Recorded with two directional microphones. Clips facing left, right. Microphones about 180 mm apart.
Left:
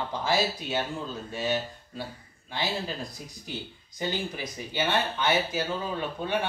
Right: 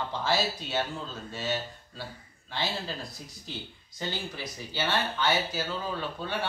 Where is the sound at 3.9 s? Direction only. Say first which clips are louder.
Left 4 dB; 15° left (ahead or behind).